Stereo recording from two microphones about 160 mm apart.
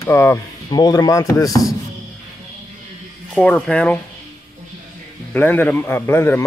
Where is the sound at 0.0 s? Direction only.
15° left (ahead or behind).